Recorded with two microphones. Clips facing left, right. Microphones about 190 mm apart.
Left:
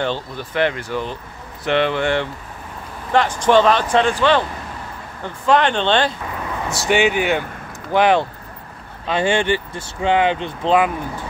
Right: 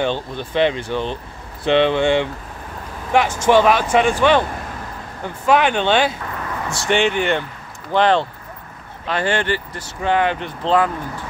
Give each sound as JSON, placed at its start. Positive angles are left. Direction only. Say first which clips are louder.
{"t": 0.0, "sound": "speech", "louder": "right 2 dB", "side_deg": -20}
{"t": 5.5, "sound": "speech", "louder": "even", "side_deg": -10}
{"t": 6.9, "sound": "speech", "louder": "left 1 dB", "side_deg": 5}